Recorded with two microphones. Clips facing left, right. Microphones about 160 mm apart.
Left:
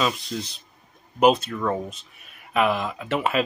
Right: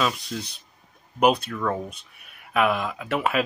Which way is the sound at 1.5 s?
5° left (ahead or behind).